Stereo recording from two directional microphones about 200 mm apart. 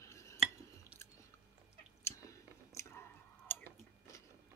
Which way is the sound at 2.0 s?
15° left (ahead or behind).